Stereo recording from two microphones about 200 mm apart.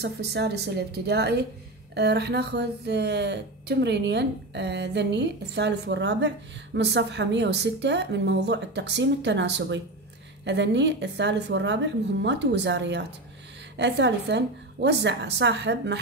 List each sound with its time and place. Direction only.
0.0 s speech: 55° right (ahead or behind)